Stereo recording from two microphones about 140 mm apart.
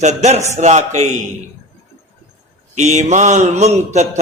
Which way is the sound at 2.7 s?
55° right (ahead or behind).